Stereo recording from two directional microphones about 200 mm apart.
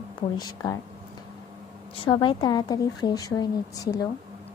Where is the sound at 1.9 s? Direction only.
25° left (ahead or behind).